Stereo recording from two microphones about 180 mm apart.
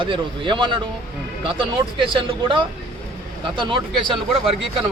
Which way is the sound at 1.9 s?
30° right (ahead or behind).